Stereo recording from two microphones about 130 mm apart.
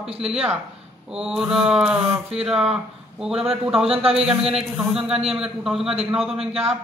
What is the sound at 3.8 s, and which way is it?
Speech, 50° right (ahead or behind).